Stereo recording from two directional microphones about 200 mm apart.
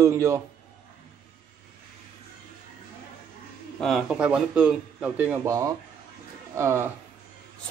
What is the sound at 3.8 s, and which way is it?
Speech, centre (ahead or behind).